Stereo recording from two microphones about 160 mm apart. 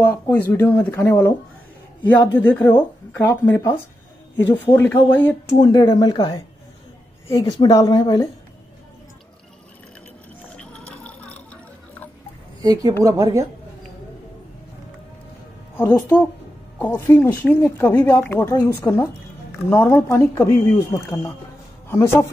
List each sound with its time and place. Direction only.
0.0 s speech: 10° left (ahead or behind)
2.3 s speech: 10° left (ahead or behind)
4.7 s speech: 10° left (ahead or behind)
5.6 s speech: 25° left (ahead or behind)
10.5 s a sound: 5° left (ahead or behind)
12.6 s a woman's voice: 25° right (ahead or behind)
15.7 s a man's voice: 15° left (ahead or behind)